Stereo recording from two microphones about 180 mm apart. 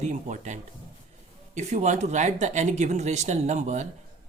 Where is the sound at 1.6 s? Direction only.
40° right (ahead or behind).